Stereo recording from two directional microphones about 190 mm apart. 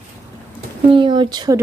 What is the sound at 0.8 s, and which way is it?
Speech, 25° right (ahead or behind).